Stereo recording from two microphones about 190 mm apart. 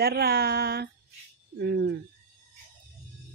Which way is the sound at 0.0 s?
55° right (ahead or behind).